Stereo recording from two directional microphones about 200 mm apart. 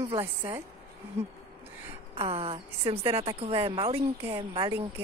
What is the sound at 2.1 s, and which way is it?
Speech, 30° right (ahead or behind).